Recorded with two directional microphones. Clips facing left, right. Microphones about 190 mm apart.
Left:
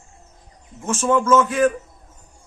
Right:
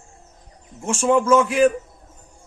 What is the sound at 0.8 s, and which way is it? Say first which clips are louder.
Speech: right 1 dB; 10° right (ahead or behind).